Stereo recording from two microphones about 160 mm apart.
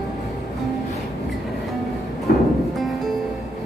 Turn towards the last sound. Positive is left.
turn(degrees=70)  # may be behind; listen again after turning